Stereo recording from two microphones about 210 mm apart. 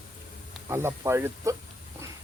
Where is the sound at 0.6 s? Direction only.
10° right (ahead or behind).